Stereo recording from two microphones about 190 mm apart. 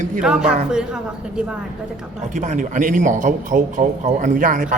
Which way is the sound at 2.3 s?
40° right (ahead or behind).